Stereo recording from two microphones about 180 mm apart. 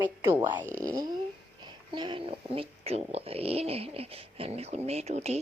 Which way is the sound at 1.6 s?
25° right (ahead or behind).